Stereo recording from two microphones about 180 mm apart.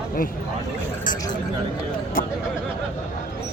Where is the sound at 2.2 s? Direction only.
50° left (ahead or behind).